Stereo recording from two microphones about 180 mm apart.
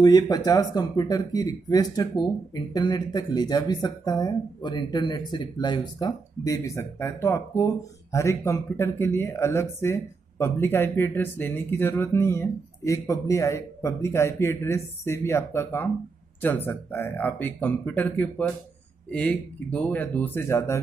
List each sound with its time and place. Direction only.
0.0 s speech: 20° left (ahead or behind)